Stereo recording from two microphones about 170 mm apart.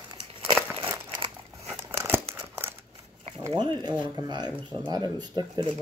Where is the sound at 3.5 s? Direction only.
25° right (ahead or behind).